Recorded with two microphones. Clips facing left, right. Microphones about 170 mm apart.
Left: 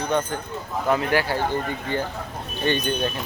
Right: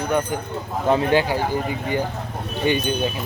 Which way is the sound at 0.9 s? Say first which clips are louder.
Right 4 dB; 20° right (ahead or behind).